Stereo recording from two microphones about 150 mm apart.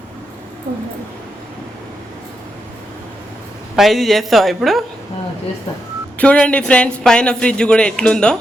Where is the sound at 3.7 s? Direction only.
Centre (ahead or behind).